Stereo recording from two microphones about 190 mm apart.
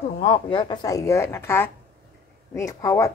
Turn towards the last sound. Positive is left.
turn(degrees=15)  # may be behind; listen again after turning